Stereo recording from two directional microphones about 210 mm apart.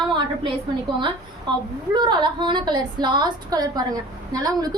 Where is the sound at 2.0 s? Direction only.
20° right (ahead or behind).